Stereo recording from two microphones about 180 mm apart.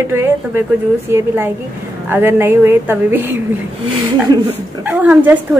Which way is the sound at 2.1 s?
10° right (ahead or behind).